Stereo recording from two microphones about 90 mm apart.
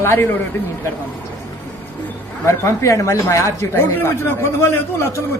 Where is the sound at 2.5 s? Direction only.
35° left (ahead or behind).